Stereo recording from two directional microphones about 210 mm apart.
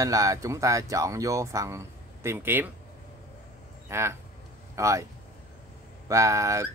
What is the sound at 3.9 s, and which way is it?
Speech, 10° right (ahead or behind).